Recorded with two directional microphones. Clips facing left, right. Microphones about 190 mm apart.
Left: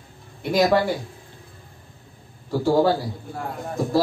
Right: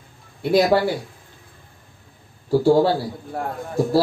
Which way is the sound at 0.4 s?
35° right (ahead or behind).